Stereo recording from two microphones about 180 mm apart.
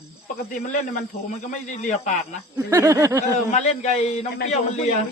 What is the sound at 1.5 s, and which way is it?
Speech, 40° left (ahead or behind).